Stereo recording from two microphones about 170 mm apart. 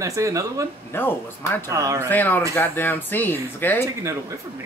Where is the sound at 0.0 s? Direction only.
20° right (ahead or behind).